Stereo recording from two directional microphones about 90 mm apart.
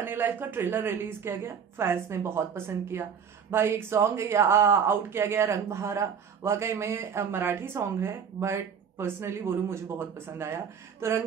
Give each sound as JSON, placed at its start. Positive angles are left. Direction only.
{"t": 0.0, "sound": "a woman's voice", "side_deg": -25}